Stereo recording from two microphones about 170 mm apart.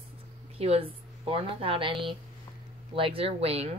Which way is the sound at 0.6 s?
35° right (ahead or behind).